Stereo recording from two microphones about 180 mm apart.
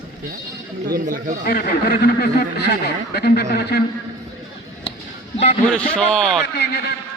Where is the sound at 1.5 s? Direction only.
60° left (ahead or behind).